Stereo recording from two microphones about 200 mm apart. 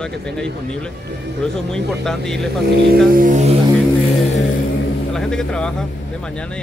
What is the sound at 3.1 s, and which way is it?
Music, 40° right (ahead or behind).